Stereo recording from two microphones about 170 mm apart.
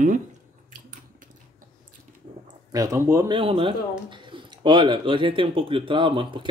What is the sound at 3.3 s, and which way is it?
Speech, 30° right (ahead or behind).